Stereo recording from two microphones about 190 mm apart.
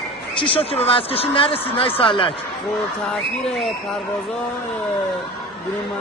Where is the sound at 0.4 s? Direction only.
30° left (ahead or behind).